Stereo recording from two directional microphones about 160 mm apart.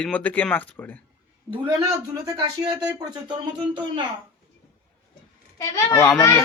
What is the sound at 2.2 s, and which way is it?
Speech, 25° right (ahead or behind).